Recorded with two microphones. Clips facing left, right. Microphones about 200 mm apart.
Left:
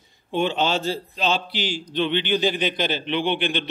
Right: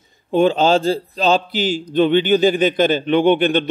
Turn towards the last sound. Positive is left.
turn(degrees=-45)  # may be behind; listen again after turning